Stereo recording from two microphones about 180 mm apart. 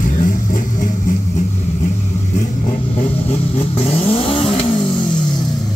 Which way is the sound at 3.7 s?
35° left (ahead or behind).